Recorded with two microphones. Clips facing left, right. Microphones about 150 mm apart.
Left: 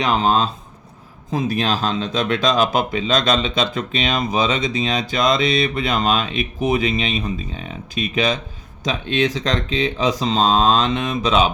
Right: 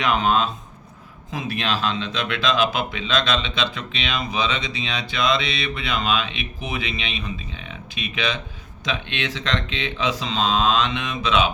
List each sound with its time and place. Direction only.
0.0 s speech: 35° left (ahead or behind)